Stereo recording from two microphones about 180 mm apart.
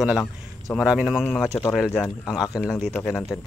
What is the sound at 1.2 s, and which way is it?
Speech, 10° left (ahead or behind).